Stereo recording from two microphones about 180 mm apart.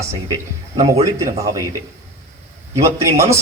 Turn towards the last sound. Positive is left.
turn(degrees=-15)  # may be behind; listen again after turning